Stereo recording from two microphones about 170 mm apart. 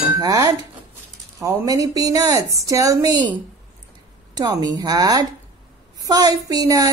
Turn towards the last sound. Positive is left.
turn(degrees=-20)  # may be behind; listen again after turning